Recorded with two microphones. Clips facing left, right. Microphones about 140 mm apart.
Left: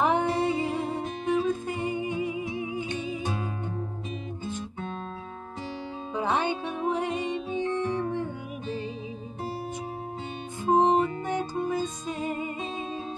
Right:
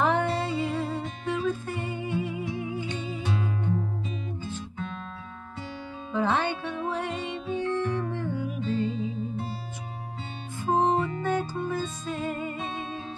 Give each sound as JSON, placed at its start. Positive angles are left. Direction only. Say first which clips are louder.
{"t": 0.0, "sound": "music", "louder": "left 1 dB", "side_deg": 15}
{"t": 6.1, "sound": "music", "louder": "right 1 dB", "side_deg": 15}
{"t": 10.6, "sound": "music", "louder": "left 2 dB", "side_deg": 20}